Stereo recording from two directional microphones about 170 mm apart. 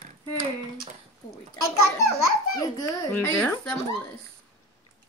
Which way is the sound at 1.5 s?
20° left (ahead or behind).